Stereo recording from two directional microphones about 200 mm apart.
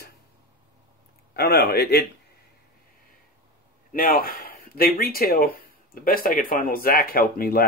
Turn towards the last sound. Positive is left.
turn(degrees=50)  # may be behind; listen again after turning